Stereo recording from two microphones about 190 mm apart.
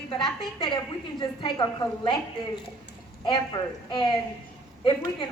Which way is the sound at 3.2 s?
25° left (ahead or behind).